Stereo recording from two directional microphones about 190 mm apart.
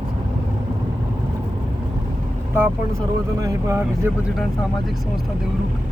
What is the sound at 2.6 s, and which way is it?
Speech, 10° right (ahead or behind).